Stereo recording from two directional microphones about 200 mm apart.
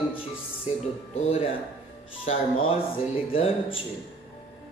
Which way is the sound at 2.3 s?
35° left (ahead or behind).